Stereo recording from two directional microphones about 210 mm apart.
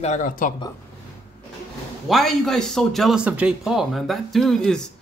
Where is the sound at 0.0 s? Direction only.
35° left (ahead or behind).